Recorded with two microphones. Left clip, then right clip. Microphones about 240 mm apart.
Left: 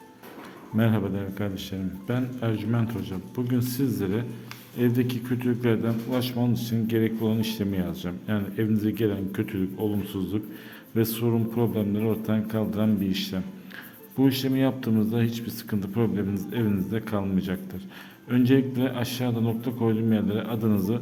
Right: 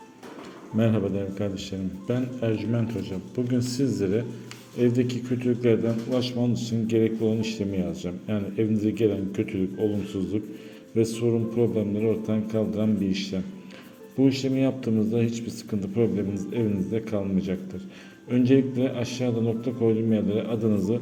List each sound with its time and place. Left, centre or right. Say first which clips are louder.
0.8 s a man's voice: right 2 dB; centre